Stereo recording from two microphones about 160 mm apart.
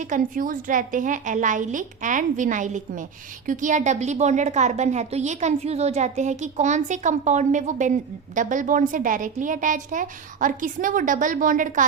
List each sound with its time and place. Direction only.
0.0 s a woman's voice: 55° right (ahead or behind)